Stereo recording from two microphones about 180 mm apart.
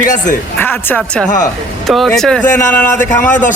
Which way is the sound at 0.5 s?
10° left (ahead or behind).